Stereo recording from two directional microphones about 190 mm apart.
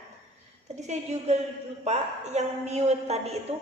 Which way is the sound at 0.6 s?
35° right (ahead or behind).